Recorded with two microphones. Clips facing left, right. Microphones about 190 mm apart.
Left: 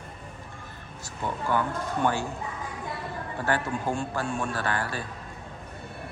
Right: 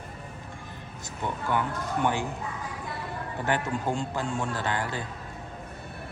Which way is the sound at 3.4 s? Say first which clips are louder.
Even; 20° right (ahead or behind).